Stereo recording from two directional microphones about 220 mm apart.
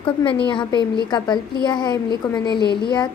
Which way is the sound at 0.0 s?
25° left (ahead or behind).